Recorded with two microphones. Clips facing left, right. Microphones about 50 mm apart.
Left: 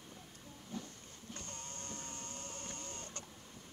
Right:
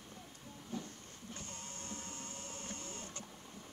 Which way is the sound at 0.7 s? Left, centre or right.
Centre.